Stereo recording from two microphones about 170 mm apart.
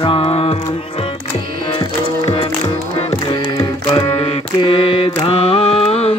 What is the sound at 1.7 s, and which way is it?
Music, 30° left (ahead or behind).